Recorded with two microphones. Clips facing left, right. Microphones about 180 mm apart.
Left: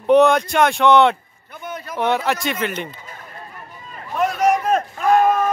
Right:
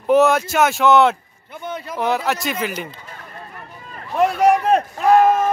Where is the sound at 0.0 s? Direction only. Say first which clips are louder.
Left 1 dB; 5° right (ahead or behind).